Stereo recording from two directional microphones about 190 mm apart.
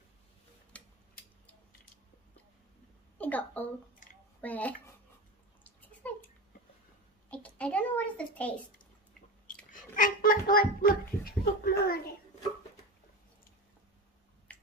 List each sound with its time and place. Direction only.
0.7 s tick-tock: 5° left (ahead or behind)
3.2 s a woman's voice: 10° left (ahead or behind)
5.6 s bathtub: 10° left (ahead or behind)
7.2 s a sound: 5° left (ahead or behind)
9.7 s a sound: 45° left (ahead or behind)
14.5 s finger snapping: 5° left (ahead or behind)